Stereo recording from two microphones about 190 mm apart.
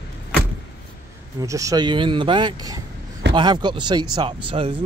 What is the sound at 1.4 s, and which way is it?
Speech, 15° right (ahead or behind).